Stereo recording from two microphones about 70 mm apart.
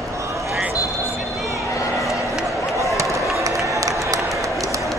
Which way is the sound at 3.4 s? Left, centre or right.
Right.